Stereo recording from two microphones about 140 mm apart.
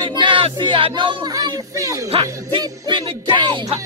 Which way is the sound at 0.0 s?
35° right (ahead or behind).